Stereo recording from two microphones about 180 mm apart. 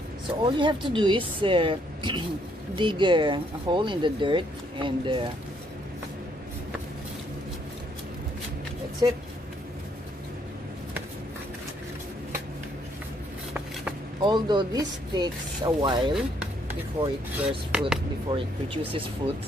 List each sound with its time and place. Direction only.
0.4 s speech: 25° right (ahead or behind)
14.2 s speech: 25° right (ahead or behind)
17.6 s speech: 5° right (ahead or behind)
18.3 s speech: 30° right (ahead or behind)